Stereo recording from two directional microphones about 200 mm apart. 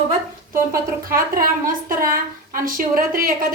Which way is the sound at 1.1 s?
45° right (ahead or behind).